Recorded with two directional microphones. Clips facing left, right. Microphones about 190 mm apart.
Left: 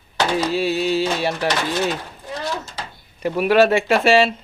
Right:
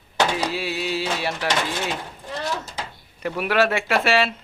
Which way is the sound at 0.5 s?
35° left (ahead or behind).